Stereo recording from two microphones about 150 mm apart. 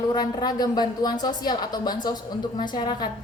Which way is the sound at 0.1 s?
30° left (ahead or behind).